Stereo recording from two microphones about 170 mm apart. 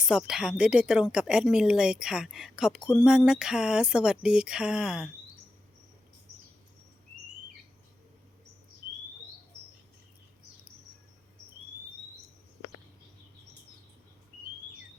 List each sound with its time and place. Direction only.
0.0 s speech: 5° right (ahead or behind)